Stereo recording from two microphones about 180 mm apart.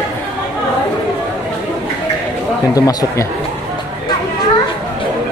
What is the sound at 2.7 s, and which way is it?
Speech, 20° left (ahead or behind).